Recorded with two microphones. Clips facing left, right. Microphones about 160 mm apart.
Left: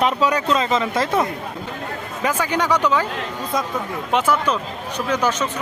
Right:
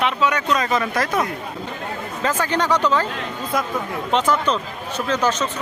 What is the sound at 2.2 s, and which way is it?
Speech, 10° left (ahead or behind).